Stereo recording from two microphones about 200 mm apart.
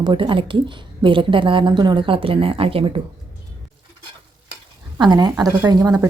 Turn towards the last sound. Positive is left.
turn(degrees=-15)  # may be behind; listen again after turning